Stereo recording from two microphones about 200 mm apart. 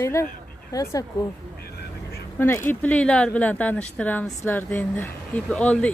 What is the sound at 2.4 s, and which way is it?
Speech, 10° left (ahead or behind).